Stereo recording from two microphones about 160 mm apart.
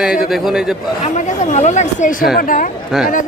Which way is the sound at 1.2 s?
45° left (ahead or behind).